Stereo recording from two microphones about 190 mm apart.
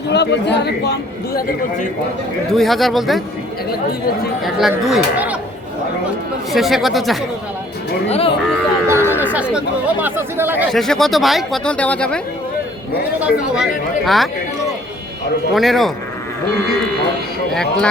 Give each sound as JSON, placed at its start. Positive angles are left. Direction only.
{"t": 0.1, "sound": "speech", "side_deg": 65}
{"t": 2.5, "sound": "speech", "side_deg": 0}
{"t": 4.4, "sound": "speech", "side_deg": 0}
{"t": 6.5, "sound": "speech", "side_deg": 0}
{"t": 8.0, "sound": "speech", "side_deg": 35}
{"t": 8.9, "sound": "speech", "side_deg": -10}
{"t": 10.7, "sound": "speech", "side_deg": 0}
{"t": 13.1, "sound": "speech", "side_deg": -5}
{"t": 15.5, "sound": "speech", "side_deg": 0}
{"t": 17.5, "sound": "speech", "side_deg": 5}